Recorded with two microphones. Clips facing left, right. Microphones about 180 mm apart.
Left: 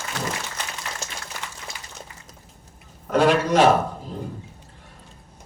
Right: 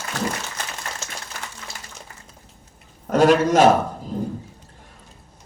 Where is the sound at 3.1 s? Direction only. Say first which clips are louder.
Right 3 dB; 45° right (ahead or behind).